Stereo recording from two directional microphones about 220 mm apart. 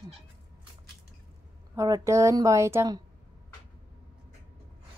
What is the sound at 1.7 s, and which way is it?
A woman's voice, 15° right (ahead or behind).